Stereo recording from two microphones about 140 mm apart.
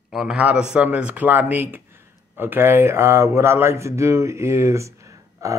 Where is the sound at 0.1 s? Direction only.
5° right (ahead or behind).